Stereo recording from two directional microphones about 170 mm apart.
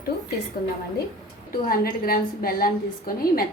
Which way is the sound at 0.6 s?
65° left (ahead or behind).